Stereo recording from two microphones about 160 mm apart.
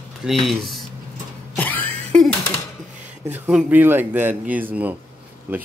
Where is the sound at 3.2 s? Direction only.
10° right (ahead or behind).